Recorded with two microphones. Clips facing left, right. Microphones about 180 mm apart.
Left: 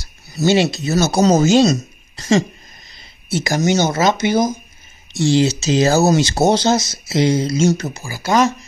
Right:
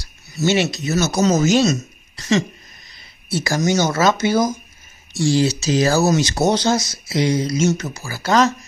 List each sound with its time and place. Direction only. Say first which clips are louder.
0.3 s speech: left 3 dB; 35° left (ahead or behind)
2.1 s a sound: left 3 dB; 35° left (ahead or behind)
3.3 s speech: left 2 dB; 20° left (ahead or behind)
8.0 s speech: even; 10° left (ahead or behind)